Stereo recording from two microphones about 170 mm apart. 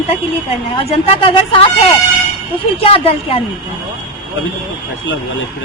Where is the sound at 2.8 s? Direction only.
35° left (ahead or behind).